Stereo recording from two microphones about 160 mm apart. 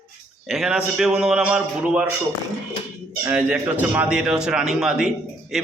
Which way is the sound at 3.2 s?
10° right (ahead or behind).